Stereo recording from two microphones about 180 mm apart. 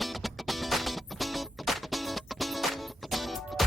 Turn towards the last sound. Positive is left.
turn(degrees=0)  # may be behind; listen again after turning